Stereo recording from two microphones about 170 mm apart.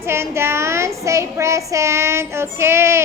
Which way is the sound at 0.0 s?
15° right (ahead or behind).